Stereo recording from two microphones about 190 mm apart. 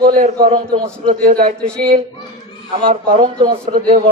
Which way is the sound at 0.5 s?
20° right (ahead or behind).